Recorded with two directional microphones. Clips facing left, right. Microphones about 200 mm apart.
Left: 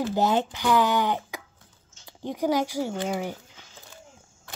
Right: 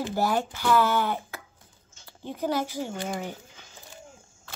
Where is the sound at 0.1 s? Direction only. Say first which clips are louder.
Left 1 dB; 20° left (ahead or behind).